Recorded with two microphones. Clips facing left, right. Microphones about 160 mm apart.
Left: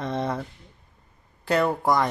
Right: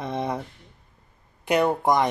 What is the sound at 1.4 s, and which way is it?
Speech, 20° right (ahead or behind).